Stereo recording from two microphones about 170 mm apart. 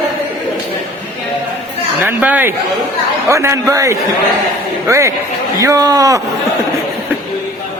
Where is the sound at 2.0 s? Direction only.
10° right (ahead or behind).